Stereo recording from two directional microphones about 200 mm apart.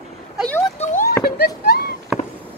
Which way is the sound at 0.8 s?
40° left (ahead or behind).